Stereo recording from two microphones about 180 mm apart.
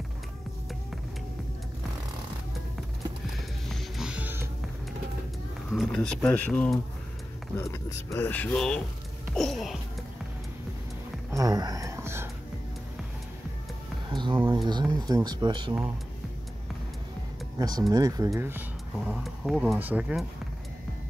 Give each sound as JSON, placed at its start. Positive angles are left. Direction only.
{"t": 3.3, "sound": "music", "side_deg": 0}
{"t": 5.7, "sound": "speech", "side_deg": 5}
{"t": 11.2, "sound": "a sound", "side_deg": -20}
{"t": 14.1, "sound": "a sound", "side_deg": -25}
{"t": 14.5, "sound": "speech", "side_deg": -25}
{"t": 17.6, "sound": "speech", "side_deg": -20}
{"t": 19.0, "sound": "speech", "side_deg": 0}